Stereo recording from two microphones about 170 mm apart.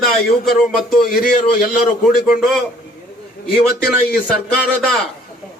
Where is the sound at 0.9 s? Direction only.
55° left (ahead or behind).